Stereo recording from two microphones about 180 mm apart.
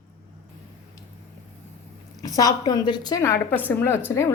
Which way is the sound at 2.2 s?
20° left (ahead or behind).